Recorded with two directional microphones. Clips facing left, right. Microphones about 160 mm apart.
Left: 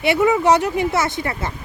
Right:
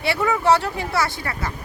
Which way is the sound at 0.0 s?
20° left (ahead or behind).